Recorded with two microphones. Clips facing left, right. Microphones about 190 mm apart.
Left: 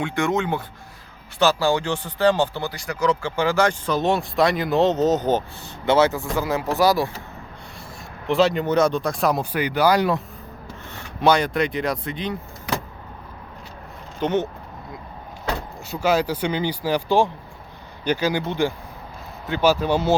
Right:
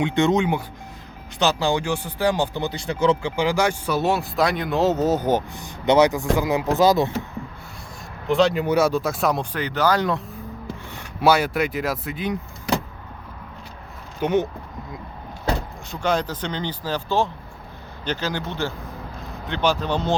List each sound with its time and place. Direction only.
0.0 s speech: 20° right (ahead or behind)
8.3 s speech: centre (ahead or behind)
10.9 s speech: 5° right (ahead or behind)
14.2 s speech: 10° right (ahead or behind)
15.9 s speech: 5° left (ahead or behind)